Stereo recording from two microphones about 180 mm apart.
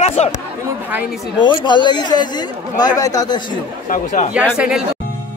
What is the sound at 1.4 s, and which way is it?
A man's voice, 25° left (ahead or behind).